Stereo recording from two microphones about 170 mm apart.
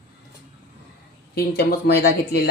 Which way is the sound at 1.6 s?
70° left (ahead or behind).